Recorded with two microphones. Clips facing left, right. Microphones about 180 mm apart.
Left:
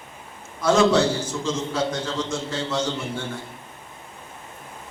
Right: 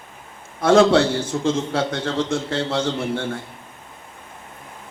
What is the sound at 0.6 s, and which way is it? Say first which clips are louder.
A man's voice: right 4 dB; 55° right (ahead or behind).